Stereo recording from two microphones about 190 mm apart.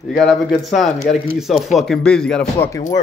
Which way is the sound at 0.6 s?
Centre (ahead or behind).